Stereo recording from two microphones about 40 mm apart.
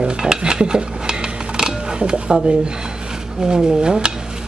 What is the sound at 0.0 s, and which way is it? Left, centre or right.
Dishes, centre.